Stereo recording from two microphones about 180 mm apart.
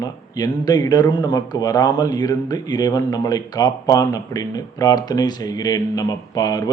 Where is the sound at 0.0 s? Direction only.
20° left (ahead or behind).